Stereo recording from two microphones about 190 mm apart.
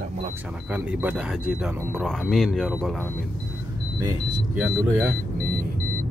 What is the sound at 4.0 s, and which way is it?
Speech, 15° right (ahead or behind).